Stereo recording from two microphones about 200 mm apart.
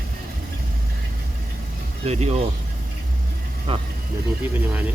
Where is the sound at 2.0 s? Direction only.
35° right (ahead or behind).